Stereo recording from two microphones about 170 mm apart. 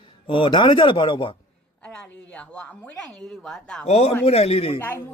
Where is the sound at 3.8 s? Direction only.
35° left (ahead or behind).